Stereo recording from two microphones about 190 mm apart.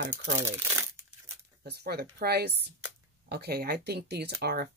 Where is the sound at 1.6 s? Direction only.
55° right (ahead or behind).